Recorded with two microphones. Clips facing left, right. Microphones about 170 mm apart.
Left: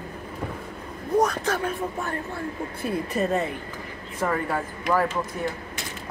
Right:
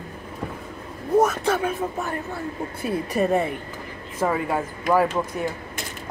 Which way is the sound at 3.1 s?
15° right (ahead or behind).